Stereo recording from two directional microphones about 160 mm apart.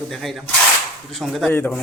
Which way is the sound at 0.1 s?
Centre (ahead or behind).